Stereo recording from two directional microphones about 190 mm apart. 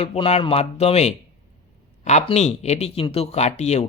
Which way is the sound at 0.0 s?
30° left (ahead or behind).